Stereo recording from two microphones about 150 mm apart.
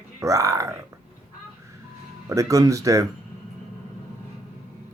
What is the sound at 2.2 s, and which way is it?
Speech, 20° right (ahead or behind).